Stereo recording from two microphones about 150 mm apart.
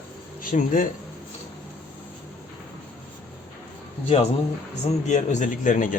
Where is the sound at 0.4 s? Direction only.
65° left (ahead or behind).